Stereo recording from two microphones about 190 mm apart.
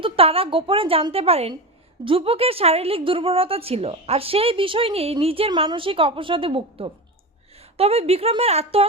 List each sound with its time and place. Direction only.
0.0 s a woman's voice: 30° right (ahead or behind)